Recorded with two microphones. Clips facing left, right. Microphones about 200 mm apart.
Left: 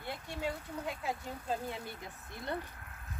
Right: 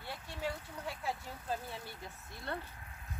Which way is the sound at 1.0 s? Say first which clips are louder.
Left 2 dB; 15° left (ahead or behind).